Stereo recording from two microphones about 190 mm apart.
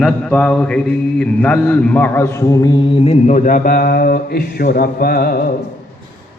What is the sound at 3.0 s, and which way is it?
Mantra, 35° left (ahead or behind).